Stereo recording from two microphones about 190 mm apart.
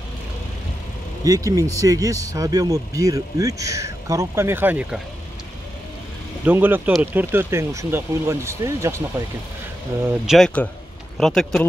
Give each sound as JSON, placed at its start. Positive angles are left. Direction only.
{"t": 1.2, "sound": "speech", "side_deg": -20}
{"t": 6.4, "sound": "speech", "side_deg": -10}
{"t": 10.0, "sound": "speech", "side_deg": 0}